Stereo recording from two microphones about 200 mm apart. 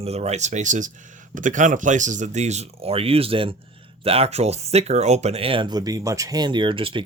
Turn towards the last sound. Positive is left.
turn(degrees=-25)  # may be behind; listen again after turning